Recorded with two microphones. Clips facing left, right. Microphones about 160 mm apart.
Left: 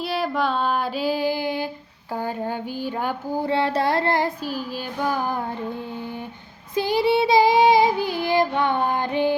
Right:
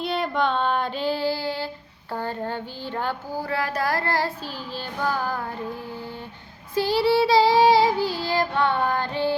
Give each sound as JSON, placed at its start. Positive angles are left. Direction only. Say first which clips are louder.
{"t": 0.0, "sound": "child singing", "louder": "even", "side_deg": 5}
{"t": 6.7, "sound": "child singing", "louder": "even", "side_deg": 20}